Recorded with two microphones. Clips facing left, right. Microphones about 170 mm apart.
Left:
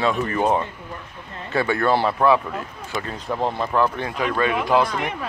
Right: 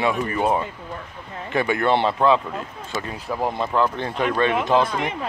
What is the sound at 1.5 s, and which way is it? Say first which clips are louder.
Speech: even; 20° right (ahead or behind).